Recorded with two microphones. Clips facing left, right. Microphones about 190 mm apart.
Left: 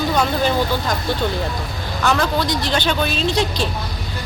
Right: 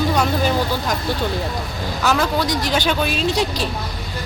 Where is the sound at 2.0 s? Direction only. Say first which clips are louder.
Even; 5° right (ahead or behind).